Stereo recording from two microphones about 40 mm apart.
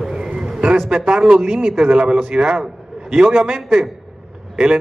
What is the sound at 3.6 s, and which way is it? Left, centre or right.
A man's voice, centre.